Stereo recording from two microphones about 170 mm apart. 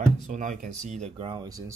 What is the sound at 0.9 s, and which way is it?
Speech, 40° right (ahead or behind).